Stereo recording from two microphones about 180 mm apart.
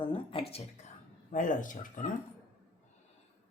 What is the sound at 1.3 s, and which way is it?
Speech, 45° left (ahead or behind).